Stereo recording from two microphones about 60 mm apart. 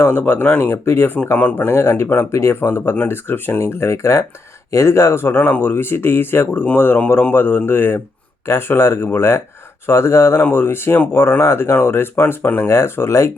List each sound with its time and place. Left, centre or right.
0.0 s speech: left
10.4 s speech: left